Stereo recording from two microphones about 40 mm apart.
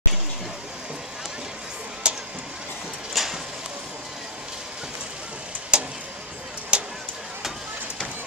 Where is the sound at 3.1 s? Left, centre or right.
Centre.